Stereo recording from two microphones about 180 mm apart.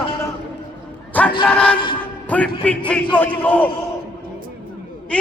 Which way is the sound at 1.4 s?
5° left (ahead or behind).